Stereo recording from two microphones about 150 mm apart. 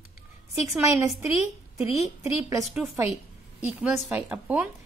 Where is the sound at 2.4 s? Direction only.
20° right (ahead or behind).